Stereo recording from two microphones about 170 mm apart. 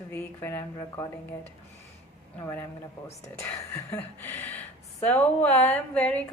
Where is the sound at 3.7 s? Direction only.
15° left (ahead or behind).